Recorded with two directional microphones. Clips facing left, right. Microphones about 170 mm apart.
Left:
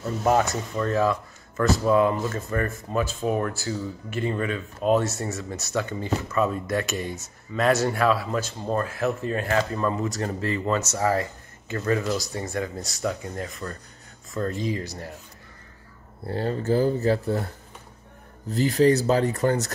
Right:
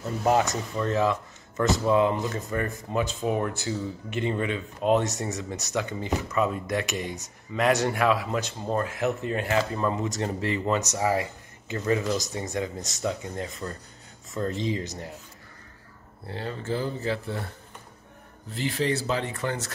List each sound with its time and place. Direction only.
0.2 s speech: 15° right (ahead or behind)
16.3 s speech: 40° left (ahead or behind)
18.5 s speech: 40° left (ahead or behind)